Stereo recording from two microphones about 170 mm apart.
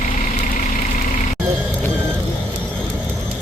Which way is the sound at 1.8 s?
10° left (ahead or behind).